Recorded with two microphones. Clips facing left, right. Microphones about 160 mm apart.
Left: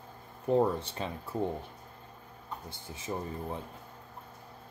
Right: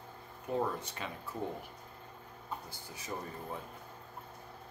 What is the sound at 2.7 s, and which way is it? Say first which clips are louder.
Speech: left 5 dB; 25° left (ahead or behind).